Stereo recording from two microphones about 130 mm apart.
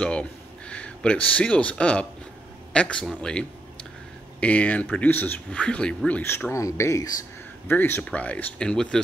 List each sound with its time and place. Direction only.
0.0 s speech: 10° left (ahead or behind)